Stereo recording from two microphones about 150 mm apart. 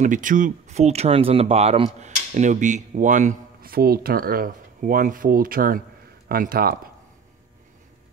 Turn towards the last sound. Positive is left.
turn(degrees=-80)